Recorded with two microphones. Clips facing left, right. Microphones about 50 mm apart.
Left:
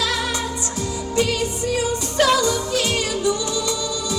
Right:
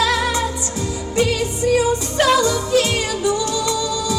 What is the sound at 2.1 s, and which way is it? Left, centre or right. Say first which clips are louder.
Music: right 1 dB; right.